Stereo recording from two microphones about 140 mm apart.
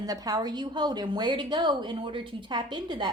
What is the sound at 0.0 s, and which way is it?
A woman's voice, 25° right (ahead or behind).